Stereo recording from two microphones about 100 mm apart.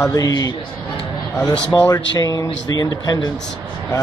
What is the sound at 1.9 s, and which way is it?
Speech, 40° left (ahead or behind).